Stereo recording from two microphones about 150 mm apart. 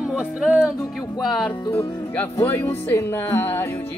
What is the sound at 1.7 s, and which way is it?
Music, 15° left (ahead or behind).